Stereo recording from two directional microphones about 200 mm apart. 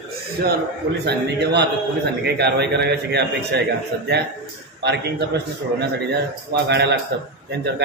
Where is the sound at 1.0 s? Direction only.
55° right (ahead or behind).